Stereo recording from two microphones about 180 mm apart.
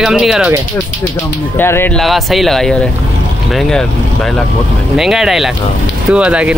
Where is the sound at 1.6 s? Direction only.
10° left (ahead or behind).